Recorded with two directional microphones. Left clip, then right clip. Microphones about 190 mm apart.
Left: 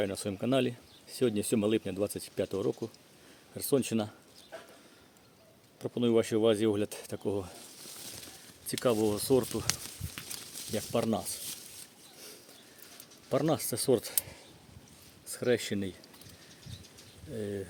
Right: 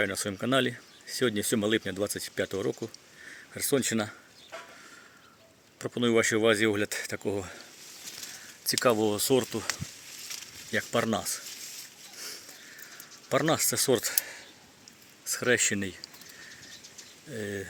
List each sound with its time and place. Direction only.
0.0 s speech: centre (ahead or behind)
5.8 s speech: 5° right (ahead or behind)
7.2 s speech: 25° right (ahead or behind)
8.7 s speech: 5° right (ahead or behind)
10.7 s speech: centre (ahead or behind)
13.3 s speech: centre (ahead or behind)
17.3 s speech: 5° right (ahead or behind)